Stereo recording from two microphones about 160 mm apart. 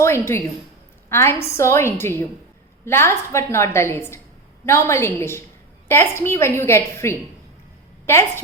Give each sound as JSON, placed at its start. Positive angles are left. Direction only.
{"t": 0.0, "sound": "a woman's voice", "side_deg": 15}